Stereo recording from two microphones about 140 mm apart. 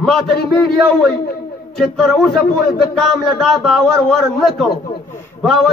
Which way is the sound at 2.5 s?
90° left.